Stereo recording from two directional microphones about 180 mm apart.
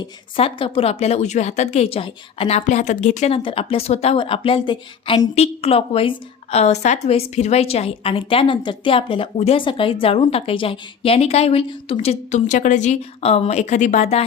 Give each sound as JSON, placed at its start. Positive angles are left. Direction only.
{"t": 0.0, "sound": "a woman's voice", "side_deg": 30}